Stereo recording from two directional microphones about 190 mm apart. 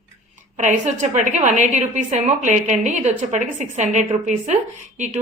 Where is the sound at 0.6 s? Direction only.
40° right (ahead or behind).